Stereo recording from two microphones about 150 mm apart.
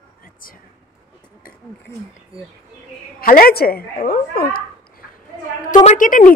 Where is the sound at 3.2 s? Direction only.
75° left (ahead or behind).